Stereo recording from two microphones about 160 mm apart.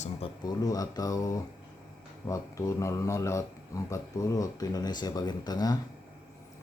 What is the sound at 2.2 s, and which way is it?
Speech, 20° left (ahead or behind).